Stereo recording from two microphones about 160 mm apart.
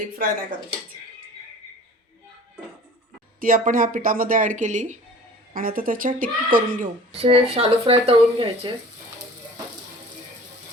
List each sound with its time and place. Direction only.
3.4 s speech: 60° right (ahead or behind)
5.5 s speech: 65° right (ahead or behind)
7.2 s speech: 40° right (ahead or behind)